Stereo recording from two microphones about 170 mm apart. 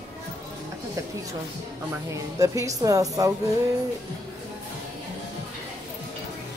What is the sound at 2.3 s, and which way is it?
Speech, 20° right (ahead or behind).